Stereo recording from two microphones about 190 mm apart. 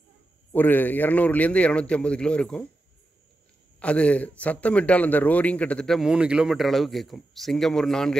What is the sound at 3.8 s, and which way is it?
A man's voice, 5° left (ahead or behind).